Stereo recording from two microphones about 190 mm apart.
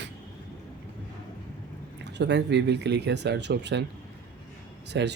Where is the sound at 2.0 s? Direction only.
65° right (ahead or behind).